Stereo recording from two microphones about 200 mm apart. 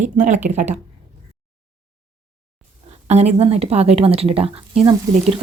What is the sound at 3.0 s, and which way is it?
Speech, 35° right (ahead or behind).